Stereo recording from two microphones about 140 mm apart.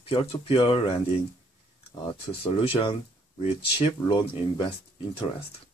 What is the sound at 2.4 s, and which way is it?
Speech, 40° left (ahead or behind).